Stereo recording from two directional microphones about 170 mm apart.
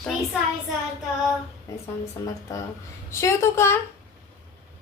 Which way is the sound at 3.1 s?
15° left (ahead or behind).